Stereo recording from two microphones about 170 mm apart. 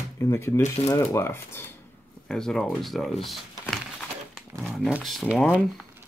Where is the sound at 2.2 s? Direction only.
5° left (ahead or behind).